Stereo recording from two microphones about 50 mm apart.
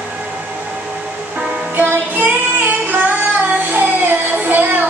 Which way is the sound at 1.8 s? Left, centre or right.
Right.